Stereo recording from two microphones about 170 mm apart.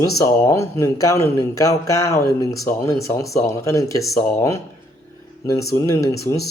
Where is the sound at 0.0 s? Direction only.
20° left (ahead or behind).